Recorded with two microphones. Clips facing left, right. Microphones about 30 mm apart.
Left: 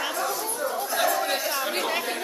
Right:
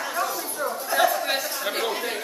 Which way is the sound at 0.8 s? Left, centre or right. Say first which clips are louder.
Right 5 dB; centre.